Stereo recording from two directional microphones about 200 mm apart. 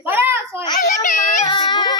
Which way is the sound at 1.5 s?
20° left (ahead or behind).